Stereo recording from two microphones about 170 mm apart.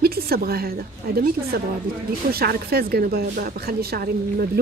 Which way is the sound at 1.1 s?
65° right (ahead or behind).